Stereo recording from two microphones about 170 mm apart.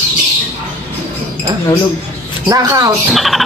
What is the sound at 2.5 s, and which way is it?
Speech, 20° right (ahead or behind).